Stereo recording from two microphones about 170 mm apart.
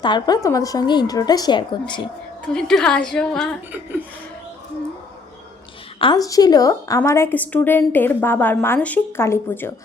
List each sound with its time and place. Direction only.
0.0 s a woman's voice: 25° left (ahead or behind)
2.5 s a woman's voice: 5° left (ahead or behind)
6.0 s a woman's voice: 25° left (ahead or behind)